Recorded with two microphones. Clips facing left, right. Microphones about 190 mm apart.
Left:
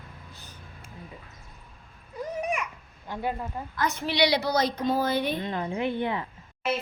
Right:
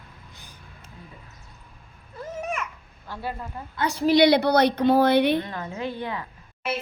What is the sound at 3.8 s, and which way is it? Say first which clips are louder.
A woman's voice: right 7 dB; 35° right (ahead or behind).